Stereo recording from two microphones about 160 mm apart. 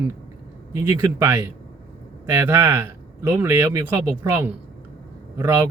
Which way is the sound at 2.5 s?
15° right (ahead or behind).